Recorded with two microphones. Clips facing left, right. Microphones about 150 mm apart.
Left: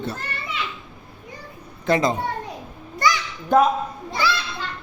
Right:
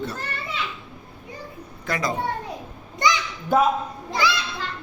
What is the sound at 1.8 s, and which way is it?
Speech, 25° left (ahead or behind).